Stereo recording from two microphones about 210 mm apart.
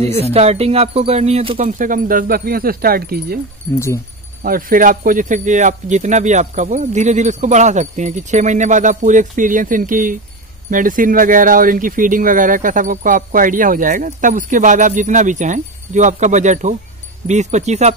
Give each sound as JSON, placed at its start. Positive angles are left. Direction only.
{"t": 0.2, "sound": "speech", "side_deg": -30}
{"t": 1.7, "sound": "speech", "side_deg": -40}
{"t": 3.7, "sound": "speech", "side_deg": 15}
{"t": 4.4, "sound": "speech", "side_deg": -40}